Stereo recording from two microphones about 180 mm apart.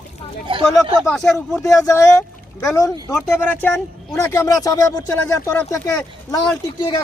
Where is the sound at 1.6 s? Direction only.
15° left (ahead or behind).